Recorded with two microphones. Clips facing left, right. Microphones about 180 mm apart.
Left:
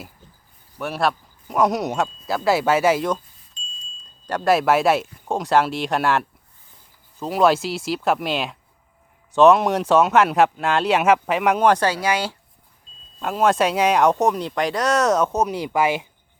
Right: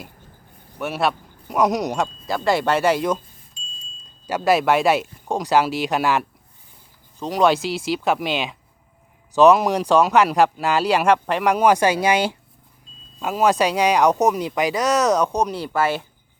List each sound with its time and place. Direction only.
0.8 s speech: centre (ahead or behind); by 12.4 s 20° right (ahead or behind)
13.1 s speech: 5° right (ahead or behind); by 16.0 s 15° left (ahead or behind)